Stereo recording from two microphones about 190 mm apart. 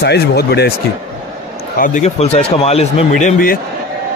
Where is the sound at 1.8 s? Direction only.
40° left (ahead or behind).